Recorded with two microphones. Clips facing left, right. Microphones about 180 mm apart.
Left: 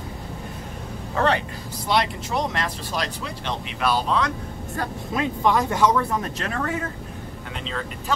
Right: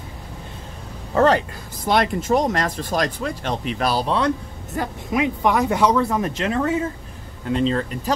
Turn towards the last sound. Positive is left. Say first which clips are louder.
# right 12 dB
turn(degrees=-40)  # may be behind; listen again after turning